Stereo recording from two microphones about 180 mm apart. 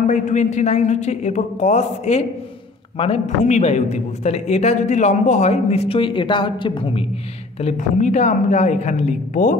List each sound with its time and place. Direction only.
0.0 s a woman's voice: 40° left (ahead or behind)
7.6 s a woman's voice: 40° left (ahead or behind)